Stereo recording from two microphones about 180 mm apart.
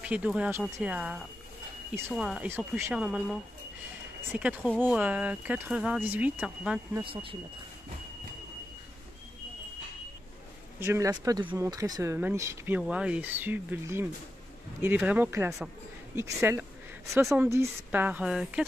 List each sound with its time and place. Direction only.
0.0 s speech: 5° right (ahead or behind)
7.1 s speech: 30° right (ahead or behind)
10.8 s speech: 15° right (ahead or behind)